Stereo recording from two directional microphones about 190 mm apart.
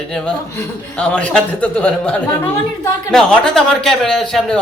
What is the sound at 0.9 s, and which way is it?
A man's voice, 5° left (ahead or behind).